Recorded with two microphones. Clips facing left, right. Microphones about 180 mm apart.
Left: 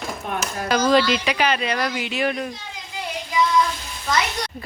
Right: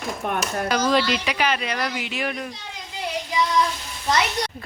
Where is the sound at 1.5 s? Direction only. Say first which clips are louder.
Left 3 dB; 30° left (ahead or behind).